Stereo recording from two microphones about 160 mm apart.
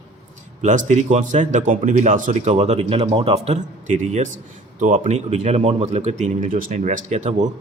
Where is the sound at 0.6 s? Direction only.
50° right (ahead or behind).